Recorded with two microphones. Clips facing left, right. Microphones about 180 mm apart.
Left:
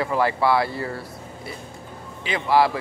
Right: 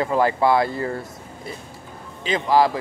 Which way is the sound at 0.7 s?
45° right (ahead or behind).